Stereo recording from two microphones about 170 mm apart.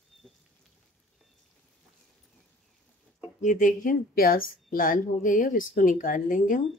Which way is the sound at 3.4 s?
50° left (ahead or behind).